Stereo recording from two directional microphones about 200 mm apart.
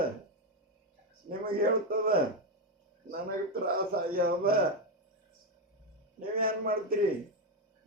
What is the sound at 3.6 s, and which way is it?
Speech, 45° right (ahead or behind).